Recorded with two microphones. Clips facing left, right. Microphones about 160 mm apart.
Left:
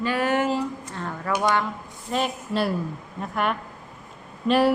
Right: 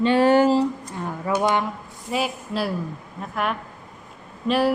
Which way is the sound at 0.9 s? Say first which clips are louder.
Right 2 dB; 15° right (ahead or behind).